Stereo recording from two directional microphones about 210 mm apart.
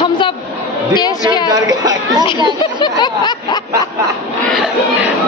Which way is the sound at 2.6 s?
20° left (ahead or behind).